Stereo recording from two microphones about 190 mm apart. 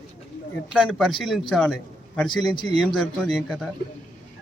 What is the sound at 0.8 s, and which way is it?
Speech, centre (ahead or behind).